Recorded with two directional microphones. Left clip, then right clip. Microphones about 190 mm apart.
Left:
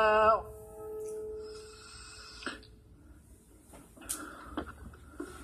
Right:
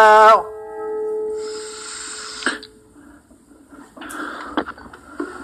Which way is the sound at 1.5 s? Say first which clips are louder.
Right 17 dB; 50° right (ahead or behind).